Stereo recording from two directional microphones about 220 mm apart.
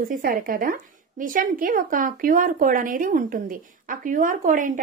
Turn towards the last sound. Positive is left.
turn(degrees=-35)  # may be behind; listen again after turning